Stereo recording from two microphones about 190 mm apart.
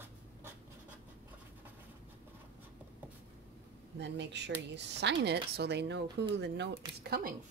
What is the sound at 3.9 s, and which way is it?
A woman's voice, 65° right (ahead or behind).